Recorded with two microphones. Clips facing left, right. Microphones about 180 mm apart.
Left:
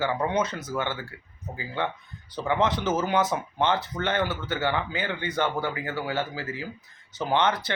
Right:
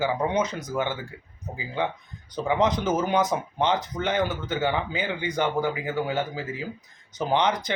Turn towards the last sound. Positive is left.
turn(degrees=-15)  # may be behind; listen again after turning